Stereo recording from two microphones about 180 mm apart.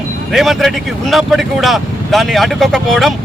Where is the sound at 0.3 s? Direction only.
Centre (ahead or behind).